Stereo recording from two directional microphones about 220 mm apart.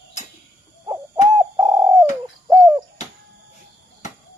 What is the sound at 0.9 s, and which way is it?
Bird, 15° right (ahead or behind).